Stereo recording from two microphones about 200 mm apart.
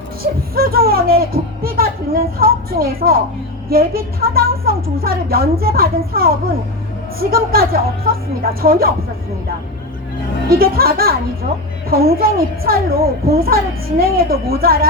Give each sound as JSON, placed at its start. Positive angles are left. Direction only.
{"t": 0.2, "sound": "a woman's voice", "side_deg": -45}
{"t": 10.5, "sound": "a woman's voice", "side_deg": -50}